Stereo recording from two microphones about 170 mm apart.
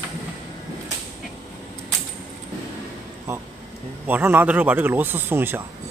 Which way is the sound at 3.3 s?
15° right (ahead or behind).